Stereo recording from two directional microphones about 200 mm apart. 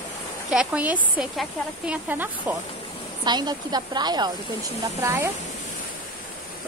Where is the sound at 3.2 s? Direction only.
20° right (ahead or behind).